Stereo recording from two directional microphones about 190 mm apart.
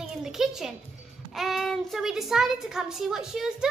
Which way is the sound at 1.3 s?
Centre (ahead or behind).